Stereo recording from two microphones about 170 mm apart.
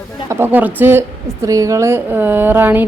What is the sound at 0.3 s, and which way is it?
A woman's voice, 15° right (ahead or behind).